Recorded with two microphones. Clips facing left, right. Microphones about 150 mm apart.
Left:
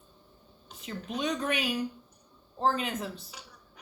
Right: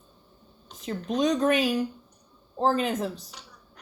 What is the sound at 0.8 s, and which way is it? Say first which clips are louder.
Speech: right 8 dB; 40° right (ahead or behind).